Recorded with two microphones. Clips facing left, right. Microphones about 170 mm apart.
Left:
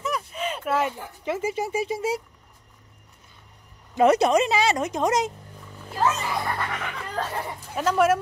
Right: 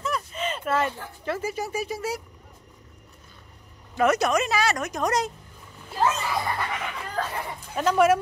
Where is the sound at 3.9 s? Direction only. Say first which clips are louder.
Left 4 dB; 30° left (ahead or behind).